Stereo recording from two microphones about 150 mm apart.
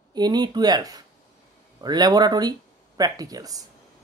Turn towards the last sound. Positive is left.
turn(degrees=-25)  # may be behind; listen again after turning